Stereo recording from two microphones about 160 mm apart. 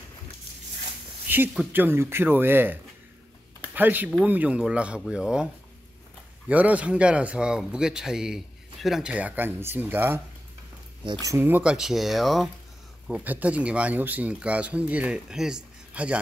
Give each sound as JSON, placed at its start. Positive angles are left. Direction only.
{"t": 1.3, "sound": "a sound", "side_deg": -10}
{"t": 1.7, "sound": "a man's voice", "side_deg": -15}
{"t": 6.5, "sound": "a man's voice", "side_deg": -10}
{"t": 11.2, "sound": "a man's voice", "side_deg": -15}